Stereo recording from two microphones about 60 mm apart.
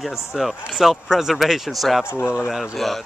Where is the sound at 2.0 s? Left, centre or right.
Left.